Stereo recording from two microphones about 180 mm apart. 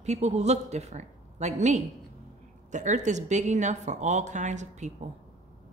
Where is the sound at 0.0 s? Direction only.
40° right (ahead or behind).